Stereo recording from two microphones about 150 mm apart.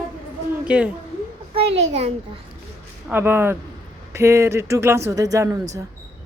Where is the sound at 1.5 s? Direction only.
45° right (ahead or behind).